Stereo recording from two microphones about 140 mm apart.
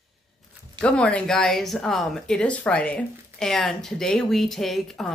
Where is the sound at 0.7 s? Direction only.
10° left (ahead or behind).